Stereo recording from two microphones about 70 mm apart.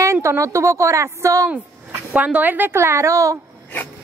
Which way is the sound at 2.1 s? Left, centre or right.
Right.